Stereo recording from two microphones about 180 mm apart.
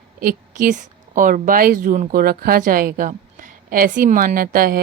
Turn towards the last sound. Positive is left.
turn(degrees=-55)  # may be behind; listen again after turning